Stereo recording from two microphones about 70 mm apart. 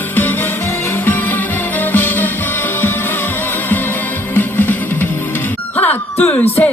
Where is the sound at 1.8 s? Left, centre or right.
Left.